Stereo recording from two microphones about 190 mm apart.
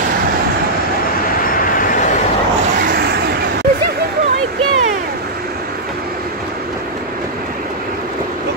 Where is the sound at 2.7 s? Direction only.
55° right (ahead or behind).